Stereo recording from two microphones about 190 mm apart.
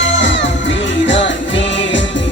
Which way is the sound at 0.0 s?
75° left (ahead or behind).